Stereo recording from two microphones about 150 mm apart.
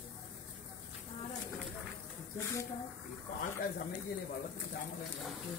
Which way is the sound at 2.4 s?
20° left (ahead or behind).